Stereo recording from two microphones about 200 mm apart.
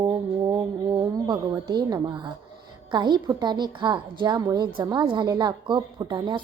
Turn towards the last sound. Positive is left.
turn(degrees=-25)  # may be behind; listen again after turning